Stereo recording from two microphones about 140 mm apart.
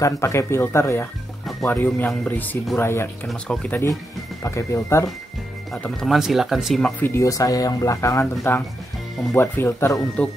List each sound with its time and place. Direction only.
0.0 s speech: 20° left (ahead or behind)
3.3 s speech: 5° left (ahead or behind)
4.4 s speech: 20° left (ahead or behind)
5.7 s speech: 5° left (ahead or behind)
7.0 s speech: 20° left (ahead or behind)